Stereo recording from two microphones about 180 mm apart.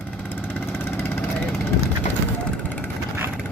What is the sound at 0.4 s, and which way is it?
Vehicle, 10° left (ahead or behind).